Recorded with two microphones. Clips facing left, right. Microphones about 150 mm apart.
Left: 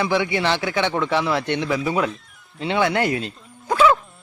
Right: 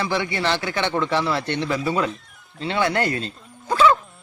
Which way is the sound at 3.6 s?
5° left (ahead or behind).